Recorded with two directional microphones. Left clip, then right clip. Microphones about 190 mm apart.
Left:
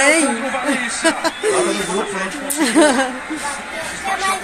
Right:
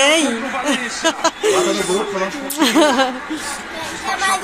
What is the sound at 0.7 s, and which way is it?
Speech, 10° left (ahead or behind).